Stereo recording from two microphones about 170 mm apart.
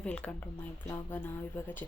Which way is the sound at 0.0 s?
5° left (ahead or behind).